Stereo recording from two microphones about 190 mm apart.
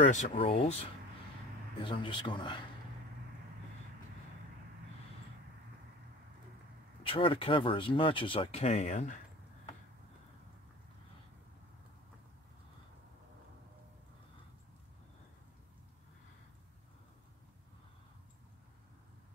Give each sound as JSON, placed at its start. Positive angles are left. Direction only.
{"t": 0.1, "sound": "speech", "side_deg": 40}
{"t": 7.1, "sound": "speech", "side_deg": 30}